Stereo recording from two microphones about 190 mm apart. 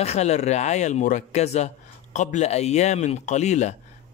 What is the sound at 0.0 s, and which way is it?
Speech, 35° left (ahead or behind).